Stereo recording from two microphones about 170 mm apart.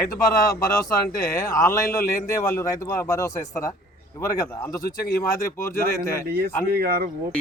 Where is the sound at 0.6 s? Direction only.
20° left (ahead or behind).